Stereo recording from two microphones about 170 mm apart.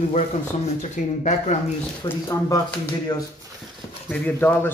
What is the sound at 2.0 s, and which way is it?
Speech, 20° left (ahead or behind).